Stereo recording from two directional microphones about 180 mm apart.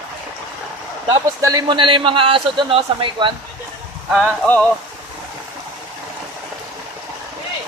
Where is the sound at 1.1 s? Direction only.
20° right (ahead or behind).